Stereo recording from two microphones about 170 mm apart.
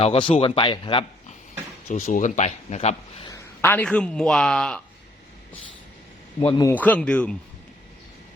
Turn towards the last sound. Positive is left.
turn(degrees=5)  # may be behind; listen again after turning